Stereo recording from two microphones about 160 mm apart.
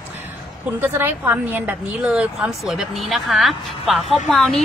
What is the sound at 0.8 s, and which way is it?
A woman's voice, 15° right (ahead or behind).